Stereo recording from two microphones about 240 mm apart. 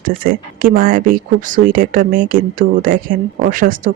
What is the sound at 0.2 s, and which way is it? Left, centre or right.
Speech, right.